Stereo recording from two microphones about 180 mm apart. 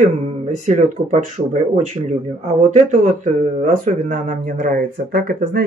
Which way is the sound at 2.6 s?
40° right (ahead or behind).